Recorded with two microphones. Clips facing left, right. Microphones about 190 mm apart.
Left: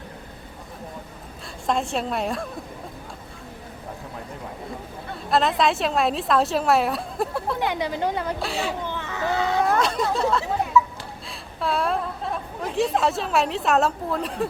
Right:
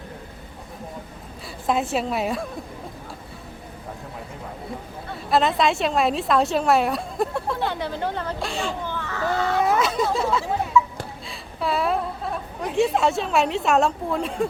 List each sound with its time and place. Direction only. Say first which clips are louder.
1.6 s a woman's voice: right 2 dB; 5° right (ahead or behind)
5.3 s a woman's voice: right 1 dB; centre (ahead or behind)
7.6 s a woman's voice: left 1 dB; 15° left (ahead or behind)
8.9 s a sound: even; 20° left (ahead or behind)
9.6 s a sound: right 1 dB; centre (ahead or behind)
12.6 s a woman's voice: right 2 dB; centre (ahead or behind)